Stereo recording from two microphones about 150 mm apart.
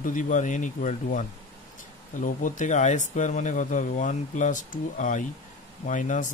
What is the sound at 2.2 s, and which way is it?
Speech, 60° left (ahead or behind).